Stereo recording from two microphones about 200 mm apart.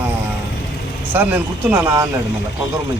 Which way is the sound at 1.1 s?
10° right (ahead or behind).